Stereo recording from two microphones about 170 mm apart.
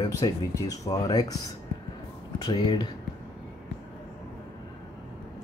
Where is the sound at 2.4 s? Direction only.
25° left (ahead or behind).